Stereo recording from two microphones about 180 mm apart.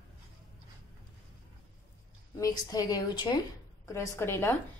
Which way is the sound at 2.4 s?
20° left (ahead or behind).